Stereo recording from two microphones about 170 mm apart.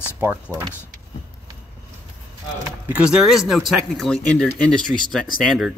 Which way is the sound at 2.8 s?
5° right (ahead or behind).